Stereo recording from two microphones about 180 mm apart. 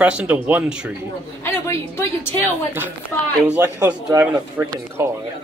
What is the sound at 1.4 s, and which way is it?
A woman's voice, 15° left (ahead or behind).